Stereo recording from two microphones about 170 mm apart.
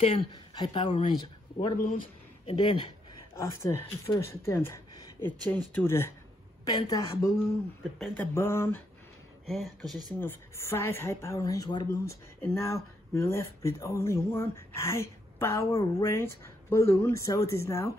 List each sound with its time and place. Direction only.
0.0 s speech: 30° left (ahead or behind)
3.3 s a woman's voice: 15° left (ahead or behind)
9.5 s speech: centre (ahead or behind)
10.2 s a woman's voice: 15° left (ahead or behind)